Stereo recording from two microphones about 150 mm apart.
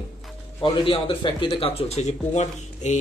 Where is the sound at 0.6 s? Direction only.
35° left (ahead or behind).